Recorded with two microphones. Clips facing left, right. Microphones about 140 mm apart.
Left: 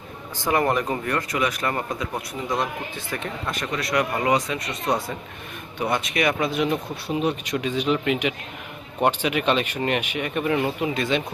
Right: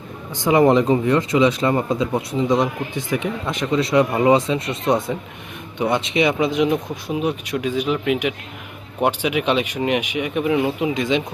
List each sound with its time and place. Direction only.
0.3 s speech: 20° right (ahead or behind)